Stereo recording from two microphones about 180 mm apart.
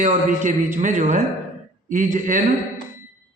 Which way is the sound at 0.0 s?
45° right (ahead or behind).